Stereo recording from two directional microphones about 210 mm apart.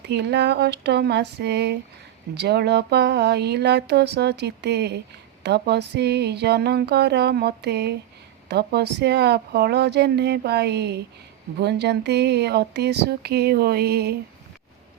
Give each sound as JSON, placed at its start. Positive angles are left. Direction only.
{"t": 0.0, "sound": "speech", "side_deg": -50}